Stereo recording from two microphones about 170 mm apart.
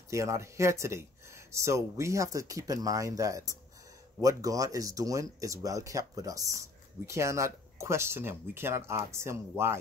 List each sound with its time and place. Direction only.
0.1 s speech: 15° right (ahead or behind)